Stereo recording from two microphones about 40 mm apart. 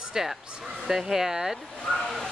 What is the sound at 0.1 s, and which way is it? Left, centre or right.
Speech, centre.